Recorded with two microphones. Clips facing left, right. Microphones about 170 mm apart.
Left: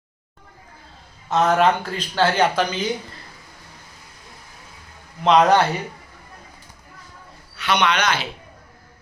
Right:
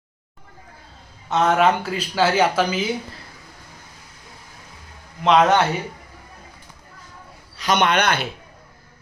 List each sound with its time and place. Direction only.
1.3 s speech: centre (ahead or behind)
5.2 s speech: centre (ahead or behind)
7.5 s speech: 40° right (ahead or behind)